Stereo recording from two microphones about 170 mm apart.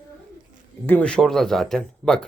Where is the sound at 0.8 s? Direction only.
10° left (ahead or behind).